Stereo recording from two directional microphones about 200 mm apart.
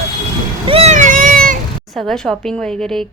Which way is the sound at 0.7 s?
30° right (ahead or behind).